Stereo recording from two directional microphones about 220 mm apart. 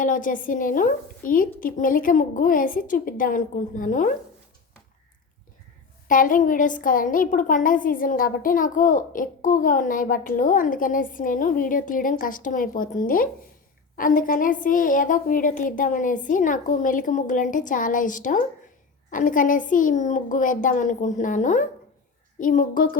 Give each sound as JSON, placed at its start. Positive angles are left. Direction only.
{"t": 0.0, "sound": "a woman's voice", "side_deg": 35}
{"t": 6.1, "sound": "a woman's voice", "side_deg": 40}